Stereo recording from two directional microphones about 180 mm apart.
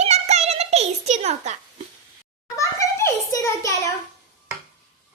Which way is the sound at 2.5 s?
15° left (ahead or behind).